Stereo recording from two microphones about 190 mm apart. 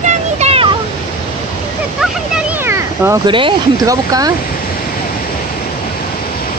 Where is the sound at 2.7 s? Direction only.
10° right (ahead or behind).